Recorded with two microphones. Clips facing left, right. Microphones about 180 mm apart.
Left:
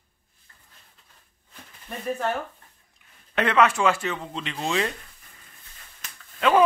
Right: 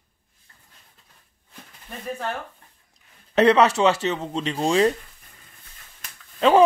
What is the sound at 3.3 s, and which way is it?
Speech, 35° right (ahead or behind).